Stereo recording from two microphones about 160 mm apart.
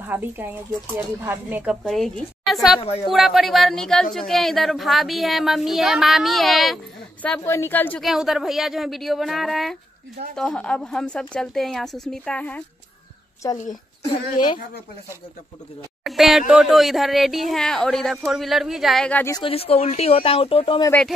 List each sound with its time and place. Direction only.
0.0 s speech: 10° right (ahead or behind)
1.9 s a woman's voice: centre (ahead or behind)
8.0 s a woman's voice: centre (ahead or behind)
16.0 s a woman's voice: centre (ahead or behind)
19.3 s speech: 35° left (ahead or behind)